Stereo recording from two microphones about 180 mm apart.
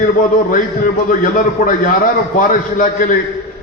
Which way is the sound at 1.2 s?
45° left (ahead or behind).